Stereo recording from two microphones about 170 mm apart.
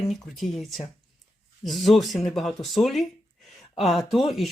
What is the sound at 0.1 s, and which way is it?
Speech, centre (ahead or behind).